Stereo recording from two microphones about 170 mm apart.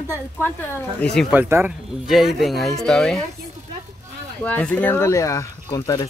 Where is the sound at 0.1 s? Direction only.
10° left (ahead or behind).